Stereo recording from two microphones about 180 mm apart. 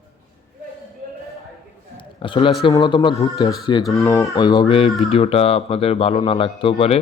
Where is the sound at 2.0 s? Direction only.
30° left (ahead or behind).